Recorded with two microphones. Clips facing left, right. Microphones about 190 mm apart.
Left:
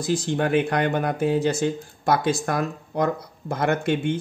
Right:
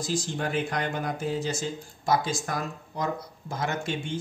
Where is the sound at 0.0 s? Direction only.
60° left (ahead or behind).